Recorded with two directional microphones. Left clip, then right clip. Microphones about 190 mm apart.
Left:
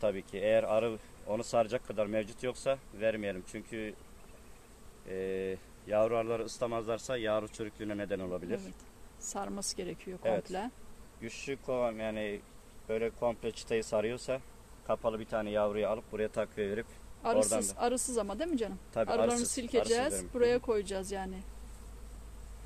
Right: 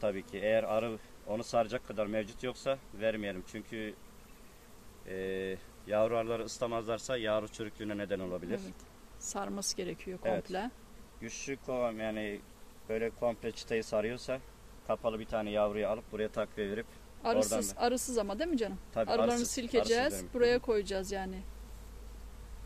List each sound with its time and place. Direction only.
0.0 s speech: 25° left (ahead or behind)
5.0 s speech: 10° left (ahead or behind)
9.2 s speech: 10° right (ahead or behind)
10.2 s speech: 20° left (ahead or behind)
17.2 s a man's voice: 10° right (ahead or behind)